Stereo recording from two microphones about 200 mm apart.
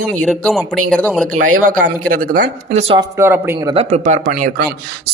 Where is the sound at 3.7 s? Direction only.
35° right (ahead or behind).